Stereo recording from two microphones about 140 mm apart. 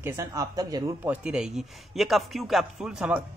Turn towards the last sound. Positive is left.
turn(degrees=-10)  # may be behind; listen again after turning